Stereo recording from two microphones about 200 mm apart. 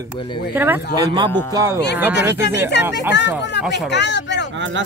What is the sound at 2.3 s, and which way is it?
Speech, 60° left (ahead or behind).